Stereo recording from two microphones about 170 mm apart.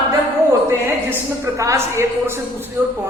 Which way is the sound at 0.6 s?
15° right (ahead or behind).